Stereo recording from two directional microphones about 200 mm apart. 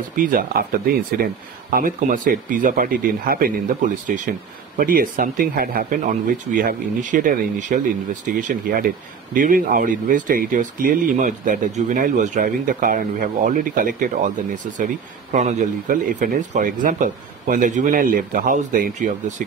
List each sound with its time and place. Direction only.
0.1 s speech: 45° right (ahead or behind)